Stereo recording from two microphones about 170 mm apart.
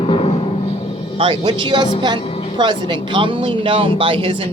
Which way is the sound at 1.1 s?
30° right (ahead or behind).